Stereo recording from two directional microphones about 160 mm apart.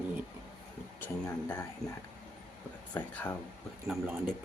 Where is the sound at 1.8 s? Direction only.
20° left (ahead or behind).